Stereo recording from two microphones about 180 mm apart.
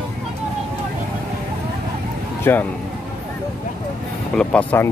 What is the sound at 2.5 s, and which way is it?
Speech, 15° left (ahead or behind).